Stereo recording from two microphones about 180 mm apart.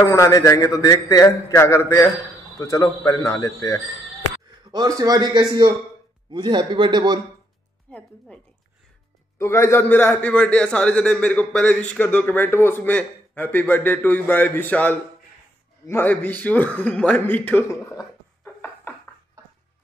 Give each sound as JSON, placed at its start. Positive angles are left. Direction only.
{"t": 0.0, "sound": "a man's voice", "side_deg": 15}
{"t": 4.6, "sound": "a man's voice", "side_deg": -20}
{"t": 7.9, "sound": "a man's voice", "side_deg": 5}